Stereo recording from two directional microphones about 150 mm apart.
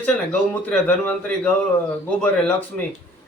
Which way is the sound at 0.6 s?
10° left (ahead or behind).